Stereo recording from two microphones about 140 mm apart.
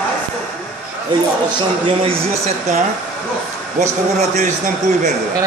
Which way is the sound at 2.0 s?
50° right (ahead or behind).